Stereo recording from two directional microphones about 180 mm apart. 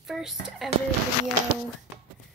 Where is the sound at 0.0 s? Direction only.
Centre (ahead or behind).